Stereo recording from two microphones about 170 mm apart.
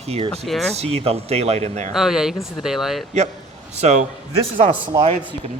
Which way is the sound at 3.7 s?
40° right (ahead or behind).